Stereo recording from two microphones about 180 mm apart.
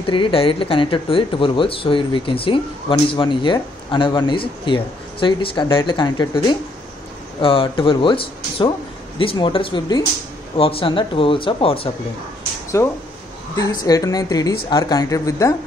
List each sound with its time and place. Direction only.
0.0 s speech: 30° left (ahead or behind)
12.7 s speech: 15° left (ahead or behind)